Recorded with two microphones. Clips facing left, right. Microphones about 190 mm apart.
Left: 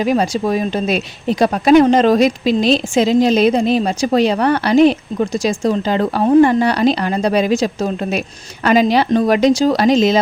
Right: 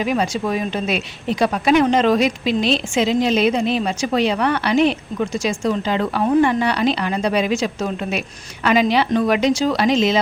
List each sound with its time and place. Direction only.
0.0 s speech: 40° left (ahead or behind)